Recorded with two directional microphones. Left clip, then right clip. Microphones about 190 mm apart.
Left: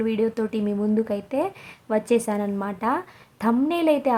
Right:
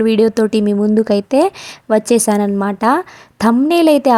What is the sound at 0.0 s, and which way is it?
Speech, 40° right (ahead or behind).